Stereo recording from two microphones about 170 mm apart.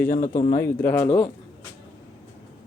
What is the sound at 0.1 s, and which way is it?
Speech, 50° left (ahead or behind).